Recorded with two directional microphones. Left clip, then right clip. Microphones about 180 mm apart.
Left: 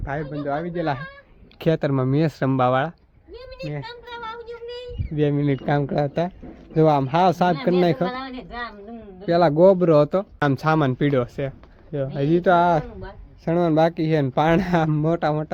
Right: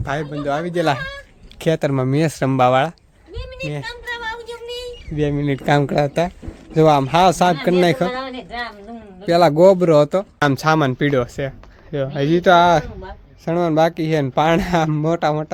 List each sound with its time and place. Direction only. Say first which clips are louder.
0.0 s a man's voice: right 5 dB; 25° right (ahead or behind)
0.7 s speech: right 7 dB; 45° right (ahead or behind)
1.5 s speech: right 3 dB; 5° left (ahead or behind)
4.0 s a sound: right 7 dB; 10° right (ahead or behind)
4.3 s a sound: right 5 dB; 25° right (ahead or behind)
5.1 s speech: right 1 dB; 5° left (ahead or behind)
5.6 s speech: right 10 dB; 10° right (ahead or behind)
8.1 s speech: right 5 dB; 45° left (ahead or behind)
9.2 s speech: right 4 dB; 5° right (ahead or behind)
11.9 s speech: right 3 dB; 10° right (ahead or behind)
13.4 s speech: right 2 dB; 10° left (ahead or behind)